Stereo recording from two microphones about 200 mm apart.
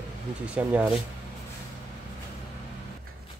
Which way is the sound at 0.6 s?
5° right (ahead or behind).